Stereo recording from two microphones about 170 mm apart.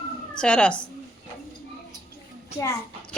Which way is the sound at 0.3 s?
5° left (ahead or behind).